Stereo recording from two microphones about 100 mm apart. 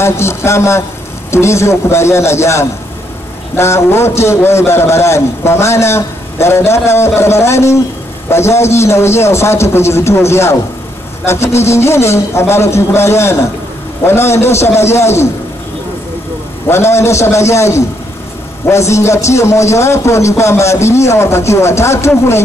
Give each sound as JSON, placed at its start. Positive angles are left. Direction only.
{"t": 0.0, "sound": "a man's voice", "side_deg": 25}
{"t": 16.6, "sound": "a man's voice", "side_deg": 25}